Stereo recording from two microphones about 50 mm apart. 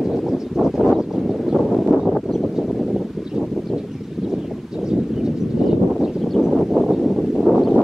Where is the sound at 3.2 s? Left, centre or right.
Centre.